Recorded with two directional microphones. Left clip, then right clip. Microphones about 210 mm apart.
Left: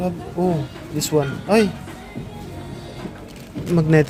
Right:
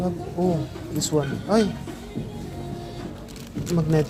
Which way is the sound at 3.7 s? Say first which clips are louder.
Left 7 dB; 45° left (ahead or behind).